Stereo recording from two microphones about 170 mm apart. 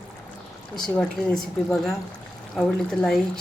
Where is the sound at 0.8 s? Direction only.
5° left (ahead or behind).